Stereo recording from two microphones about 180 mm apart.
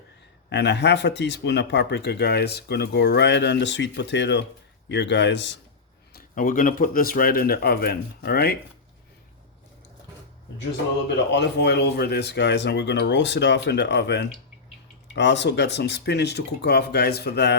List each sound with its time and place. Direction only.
0.5 s speech: 70° left (ahead or behind)
6.1 s speech: 50° left (ahead or behind)
11.3 s speech: 70° left (ahead or behind)